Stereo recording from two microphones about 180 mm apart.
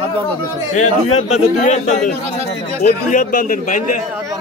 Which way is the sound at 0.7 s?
40° left (ahead or behind).